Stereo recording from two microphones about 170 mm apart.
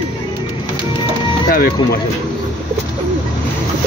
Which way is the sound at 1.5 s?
65° left (ahead or behind).